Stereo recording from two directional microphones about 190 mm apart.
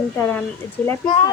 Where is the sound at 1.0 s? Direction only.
25° left (ahead or behind).